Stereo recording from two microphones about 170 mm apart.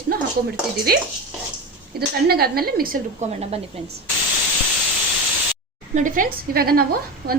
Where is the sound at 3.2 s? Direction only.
40° right (ahead or behind).